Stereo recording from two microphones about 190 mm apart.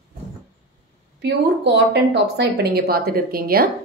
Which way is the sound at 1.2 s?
65° right (ahead or behind).